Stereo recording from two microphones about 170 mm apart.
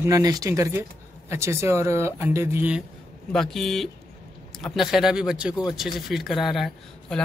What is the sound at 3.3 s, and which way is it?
A man's voice, centre (ahead or behind).